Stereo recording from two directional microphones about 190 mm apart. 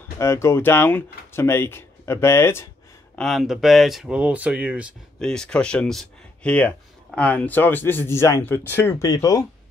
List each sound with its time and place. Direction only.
0.2 s speech: 15° left (ahead or behind)
3.2 s speech: centre (ahead or behind)
5.2 s speech: 5° left (ahead or behind); by 9.5 s 20° left (ahead or behind)